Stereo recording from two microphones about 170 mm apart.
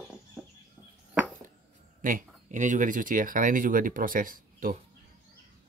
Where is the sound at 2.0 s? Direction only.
50° right (ahead or behind).